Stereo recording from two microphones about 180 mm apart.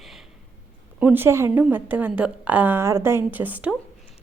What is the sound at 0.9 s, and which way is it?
A woman's voice, 10° right (ahead or behind).